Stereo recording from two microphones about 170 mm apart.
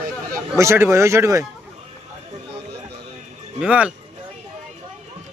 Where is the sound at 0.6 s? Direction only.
15° right (ahead or behind).